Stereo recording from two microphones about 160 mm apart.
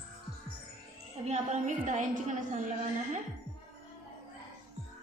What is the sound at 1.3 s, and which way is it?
A woman's voice, 50° right (ahead or behind).